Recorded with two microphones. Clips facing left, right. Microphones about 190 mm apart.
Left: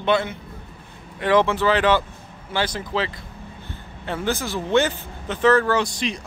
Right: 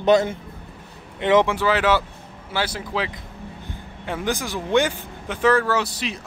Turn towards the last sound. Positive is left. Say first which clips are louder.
# left 2 dB
turn(degrees=-5)  # may be behind; listen again after turning